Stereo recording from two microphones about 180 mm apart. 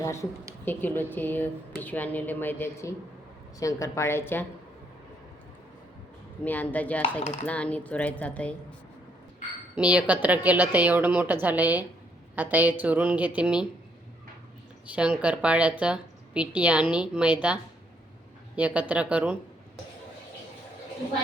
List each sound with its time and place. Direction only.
0.0 s a woman's voice: 15° left (ahead or behind)
6.4 s speech: 10° left (ahead or behind)
9.7 s a woman's voice: 5° right (ahead or behind)
14.8 s a woman's voice: 5° right (ahead or behind)